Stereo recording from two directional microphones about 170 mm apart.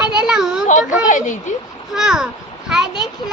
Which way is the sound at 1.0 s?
50° left (ahead or behind).